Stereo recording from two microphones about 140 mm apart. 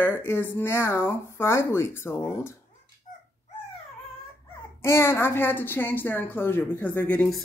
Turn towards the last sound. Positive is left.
turn(degrees=10)  # may be behind; listen again after turning